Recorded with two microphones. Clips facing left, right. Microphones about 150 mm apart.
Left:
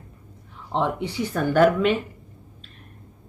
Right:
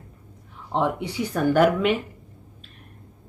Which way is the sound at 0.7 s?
10° right (ahead or behind).